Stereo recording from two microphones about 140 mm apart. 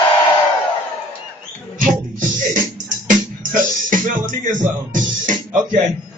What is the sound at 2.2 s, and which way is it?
Music, 70° right (ahead or behind).